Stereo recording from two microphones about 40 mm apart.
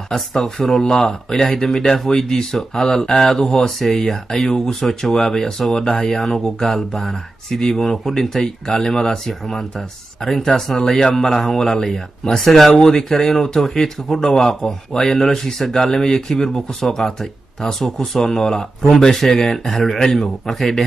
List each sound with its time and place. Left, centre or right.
0.1 s speech: centre
5.9 s a man's voice: left
6.1 s speech: centre
8.8 s a man's voice: left
9.1 s a man's voice: centre
11.2 s speech: centre